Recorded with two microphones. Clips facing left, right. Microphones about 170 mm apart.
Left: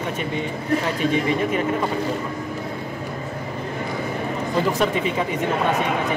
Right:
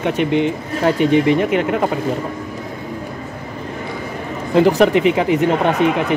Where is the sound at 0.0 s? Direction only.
80° right.